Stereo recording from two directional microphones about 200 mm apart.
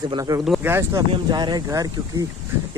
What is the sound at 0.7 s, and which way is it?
Speech, 15° right (ahead or behind).